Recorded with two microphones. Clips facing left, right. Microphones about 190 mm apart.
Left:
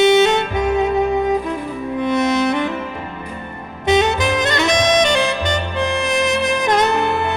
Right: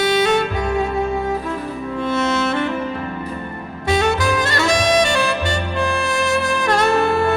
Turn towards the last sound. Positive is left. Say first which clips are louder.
# right 2 dB
turn(degrees=20)  # may be behind; listen again after turning